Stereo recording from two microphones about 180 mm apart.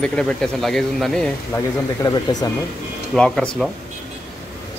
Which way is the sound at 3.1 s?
5° left (ahead or behind).